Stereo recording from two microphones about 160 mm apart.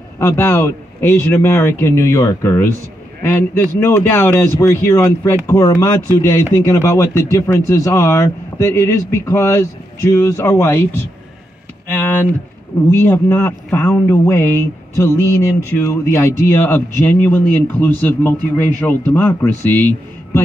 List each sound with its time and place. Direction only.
0.2 s speech: 15° left (ahead or behind)
12.9 s speech: 15° left (ahead or behind)